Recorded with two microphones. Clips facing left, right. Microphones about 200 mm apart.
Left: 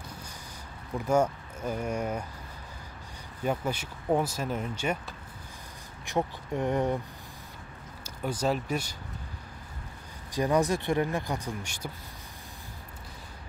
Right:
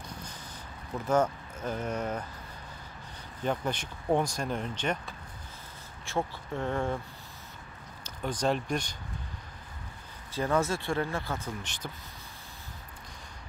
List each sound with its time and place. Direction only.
0.9 s speech: 10° left (ahead or behind)
3.4 s speech: 10° left (ahead or behind)
8.0 s speech: 10° left (ahead or behind)
10.3 s speech: 15° left (ahead or behind)